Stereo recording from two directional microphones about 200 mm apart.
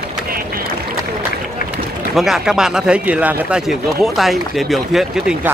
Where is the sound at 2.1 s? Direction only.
Centre (ahead or behind).